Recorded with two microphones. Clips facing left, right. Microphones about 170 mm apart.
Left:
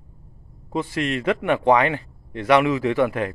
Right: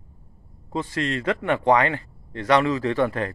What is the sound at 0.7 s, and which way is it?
A man's voice, 10° left (ahead or behind).